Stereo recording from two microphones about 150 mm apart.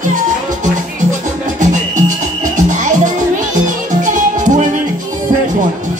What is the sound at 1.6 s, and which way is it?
Music, 55° right (ahead or behind).